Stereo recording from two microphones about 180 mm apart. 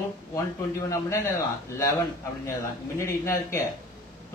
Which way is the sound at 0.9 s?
15° left (ahead or behind).